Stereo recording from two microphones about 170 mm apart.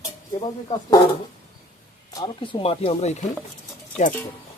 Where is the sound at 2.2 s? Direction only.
30° left (ahead or behind).